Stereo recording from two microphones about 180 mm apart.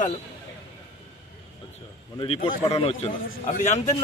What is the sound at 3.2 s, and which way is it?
Speech, 45° left (ahead or behind).